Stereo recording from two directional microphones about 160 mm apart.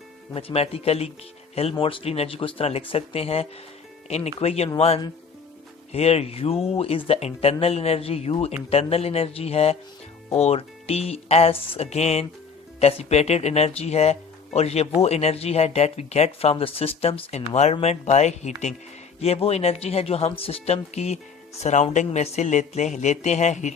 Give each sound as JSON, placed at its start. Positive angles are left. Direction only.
{"t": 0.3, "sound": "speech", "side_deg": 40}
{"t": 5.9, "sound": "speech", "side_deg": 40}